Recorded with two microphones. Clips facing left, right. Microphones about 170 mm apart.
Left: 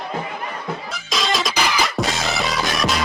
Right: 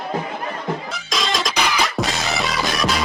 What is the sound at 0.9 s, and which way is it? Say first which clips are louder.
Music: left 1 dB; centre (ahead or behind).